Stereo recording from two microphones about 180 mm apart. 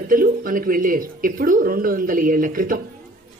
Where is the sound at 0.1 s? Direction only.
50° right (ahead or behind).